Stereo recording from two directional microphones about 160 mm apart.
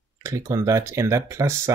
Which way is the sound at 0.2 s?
20° right (ahead or behind).